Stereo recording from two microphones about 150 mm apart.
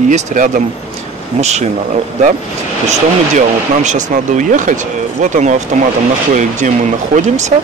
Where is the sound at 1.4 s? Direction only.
50° right (ahead or behind).